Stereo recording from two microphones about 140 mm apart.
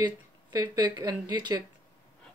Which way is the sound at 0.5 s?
25° right (ahead or behind).